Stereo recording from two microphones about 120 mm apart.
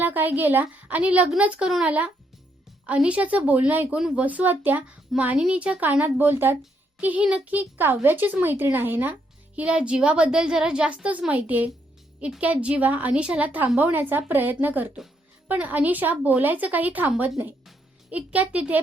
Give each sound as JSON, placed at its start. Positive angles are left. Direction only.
{"t": 0.0, "sound": "speech", "side_deg": -15}